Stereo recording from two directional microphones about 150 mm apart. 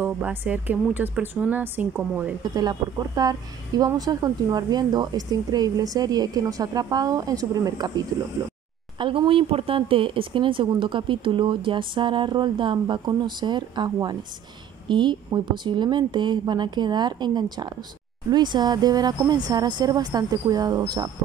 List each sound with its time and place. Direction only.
0.0 s speech: 15° right (ahead or behind)
2.5 s speech: 25° right (ahead or behind)
8.9 s speech: 30° right (ahead or behind)